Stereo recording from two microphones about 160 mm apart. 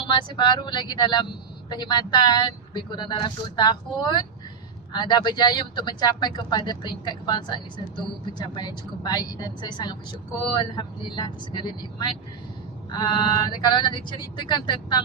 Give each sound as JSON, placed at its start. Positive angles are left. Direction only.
{"t": 0.0, "sound": "speech", "side_deg": 30}